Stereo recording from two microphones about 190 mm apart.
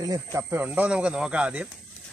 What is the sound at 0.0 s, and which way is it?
Speech, 15° right (ahead or behind).